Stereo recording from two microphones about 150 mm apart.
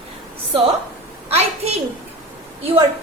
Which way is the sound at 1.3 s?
45° right (ahead or behind).